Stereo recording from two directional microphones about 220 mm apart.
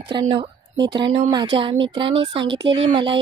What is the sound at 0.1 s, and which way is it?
A woman's voice, 20° right (ahead or behind).